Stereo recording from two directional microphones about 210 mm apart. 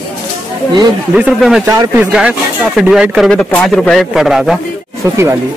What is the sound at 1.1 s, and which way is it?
Speech, 5° right (ahead or behind).